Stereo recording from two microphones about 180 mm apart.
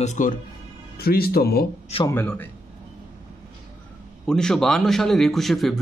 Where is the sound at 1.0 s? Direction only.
60° left (ahead or behind).